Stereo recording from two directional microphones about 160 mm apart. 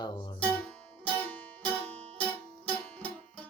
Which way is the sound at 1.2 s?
10° left (ahead or behind).